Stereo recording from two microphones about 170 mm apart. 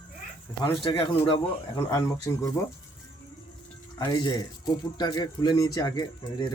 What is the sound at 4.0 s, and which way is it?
Speech, 25° left (ahead or behind).